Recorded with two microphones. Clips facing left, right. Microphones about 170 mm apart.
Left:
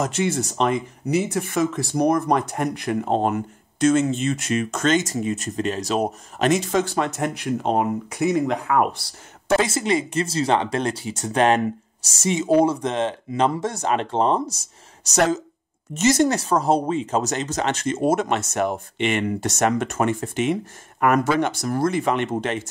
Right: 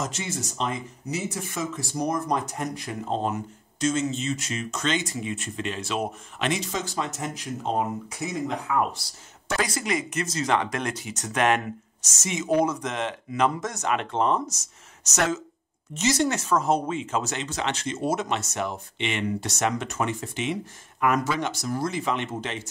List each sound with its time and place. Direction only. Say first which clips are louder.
0.0 s speech: left 9 dB; 60° left (ahead or behind)
9.6 s speech: left 6 dB; 25° left (ahead or behind)
16.0 s speech: left 6 dB; 50° left (ahead or behind)
16.3 s speech: left 4 dB; 35° left (ahead or behind); by 22.7 s 55° left (ahead or behind)